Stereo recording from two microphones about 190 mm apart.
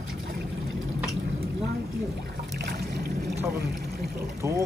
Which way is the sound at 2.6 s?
55° right (ahead or behind).